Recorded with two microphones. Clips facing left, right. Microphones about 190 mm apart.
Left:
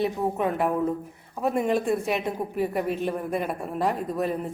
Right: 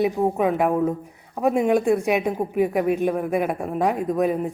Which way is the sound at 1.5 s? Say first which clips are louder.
Right 5 dB; centre (ahead or behind).